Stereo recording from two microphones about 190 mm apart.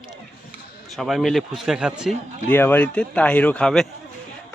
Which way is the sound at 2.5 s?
10° left (ahead or behind).